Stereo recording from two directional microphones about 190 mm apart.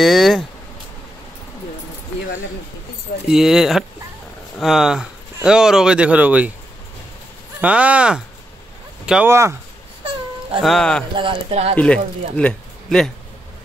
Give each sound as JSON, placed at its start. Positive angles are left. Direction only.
{"t": 0.0, "sound": "speech", "side_deg": 0}
{"t": 3.3, "sound": "speech", "side_deg": 0}
{"t": 7.6, "sound": "speech", "side_deg": -5}
{"t": 10.6, "sound": "speech", "side_deg": 0}
{"t": 11.1, "sound": "speech", "side_deg": -30}
{"t": 11.7, "sound": "speech", "side_deg": 5}